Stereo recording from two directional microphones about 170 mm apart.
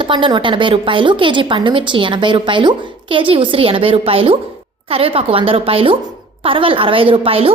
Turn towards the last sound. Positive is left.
turn(degrees=-35)  # may be behind; listen again after turning